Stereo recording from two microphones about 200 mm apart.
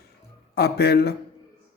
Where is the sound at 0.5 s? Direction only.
50° left (ahead or behind).